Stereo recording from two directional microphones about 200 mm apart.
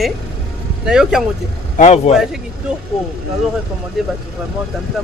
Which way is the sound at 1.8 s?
30° left (ahead or behind).